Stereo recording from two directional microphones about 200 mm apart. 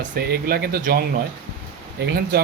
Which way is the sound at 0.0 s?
50° right (ahead or behind).